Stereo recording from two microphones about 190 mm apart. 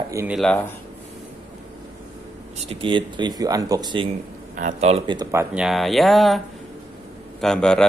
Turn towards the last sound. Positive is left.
turn(degrees=5)  # may be behind; listen again after turning